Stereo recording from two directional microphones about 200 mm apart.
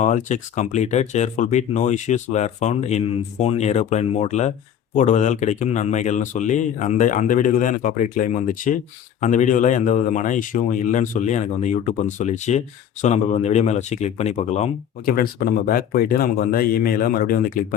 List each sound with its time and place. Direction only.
0.0 s speech: 35° left (ahead or behind)